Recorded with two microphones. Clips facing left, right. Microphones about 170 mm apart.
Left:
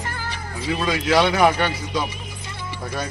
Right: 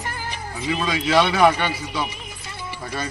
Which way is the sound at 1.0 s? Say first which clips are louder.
Even; 10° left (ahead or behind).